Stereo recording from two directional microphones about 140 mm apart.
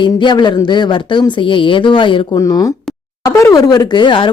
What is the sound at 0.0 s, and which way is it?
Speech, 35° left (ahead or behind).